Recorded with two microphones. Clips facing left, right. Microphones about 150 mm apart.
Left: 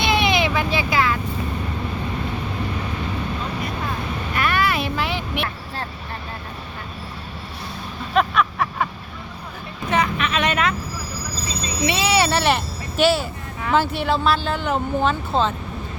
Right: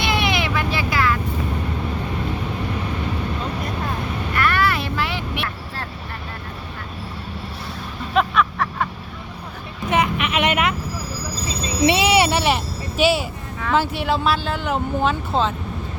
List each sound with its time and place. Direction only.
0.0 s vehicle: 20° left (ahead or behind)
4.4 s boat: 15° left (ahead or behind)
8.1 s vehicle: centre (ahead or behind)
9.9 s vehicle: 20° right (ahead or behind)
11.9 s a sound: 20° right (ahead or behind)
12.4 s a sound: 5° right (ahead or behind)
13.7 s speech: 5° right (ahead or behind)